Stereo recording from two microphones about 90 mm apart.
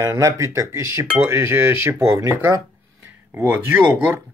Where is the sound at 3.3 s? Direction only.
25° right (ahead or behind).